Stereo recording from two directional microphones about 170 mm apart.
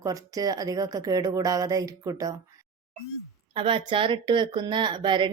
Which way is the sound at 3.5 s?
30° right (ahead or behind).